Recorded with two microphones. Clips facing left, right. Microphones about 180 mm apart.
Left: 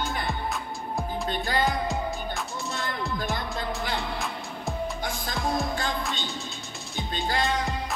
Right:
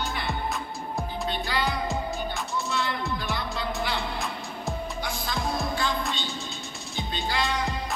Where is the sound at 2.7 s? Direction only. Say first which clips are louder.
Right 1 dB; 45° left (ahead or behind).